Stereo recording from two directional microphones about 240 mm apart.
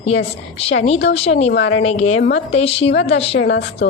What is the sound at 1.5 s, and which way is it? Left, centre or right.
Speech, left.